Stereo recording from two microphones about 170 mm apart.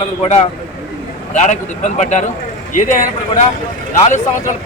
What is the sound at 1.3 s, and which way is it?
A man's voice, 45° left (ahead or behind).